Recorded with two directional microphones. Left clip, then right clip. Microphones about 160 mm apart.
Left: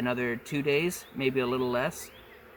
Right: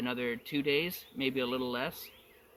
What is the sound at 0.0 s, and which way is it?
Speech, 55° left (ahead or behind).